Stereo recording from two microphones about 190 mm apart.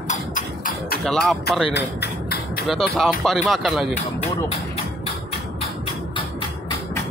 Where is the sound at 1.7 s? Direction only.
60° left (ahead or behind).